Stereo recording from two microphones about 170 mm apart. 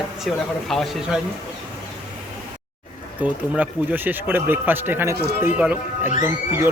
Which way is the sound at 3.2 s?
10° right (ahead or behind).